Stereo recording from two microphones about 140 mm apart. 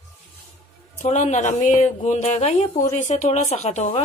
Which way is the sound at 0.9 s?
55° left (ahead or behind).